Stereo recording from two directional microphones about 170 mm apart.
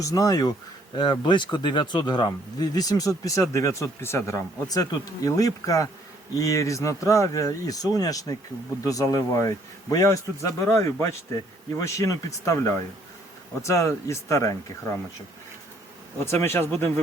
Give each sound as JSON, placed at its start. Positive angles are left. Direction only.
{"t": 0.0, "sound": "speech", "side_deg": 20}
{"t": 16.2, "sound": "speech", "side_deg": 15}